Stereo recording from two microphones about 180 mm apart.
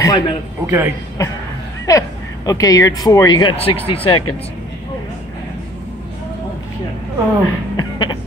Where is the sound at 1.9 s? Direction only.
20° left (ahead or behind).